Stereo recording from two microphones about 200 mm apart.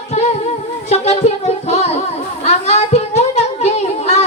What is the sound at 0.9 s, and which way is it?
Music, 30° left (ahead or behind).